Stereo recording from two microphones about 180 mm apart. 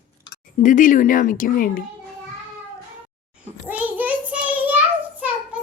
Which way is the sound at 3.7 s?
10° right (ahead or behind).